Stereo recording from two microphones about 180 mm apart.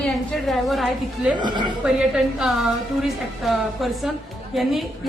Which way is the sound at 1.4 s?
25° right (ahead or behind).